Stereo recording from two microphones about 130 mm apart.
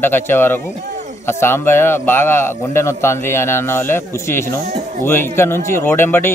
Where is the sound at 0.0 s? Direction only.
15° left (ahead or behind).